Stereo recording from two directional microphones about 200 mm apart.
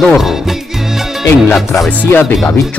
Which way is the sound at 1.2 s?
10° left (ahead or behind).